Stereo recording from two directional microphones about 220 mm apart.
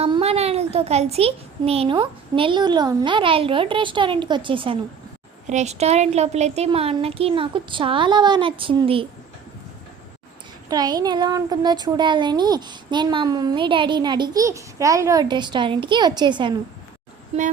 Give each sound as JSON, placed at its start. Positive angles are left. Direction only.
{"t": 0.0, "sound": "a child's voice", "side_deg": -25}
{"t": 10.7, "sound": "a woman's voice", "side_deg": -20}